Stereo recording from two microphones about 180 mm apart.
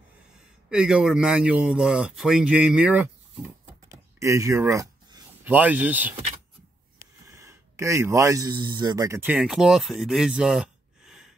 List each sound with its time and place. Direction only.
0.7 s speech: 5° right (ahead or behind)